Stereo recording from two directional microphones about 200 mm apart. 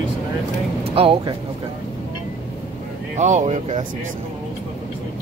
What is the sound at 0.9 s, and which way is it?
Speech, 25° right (ahead or behind).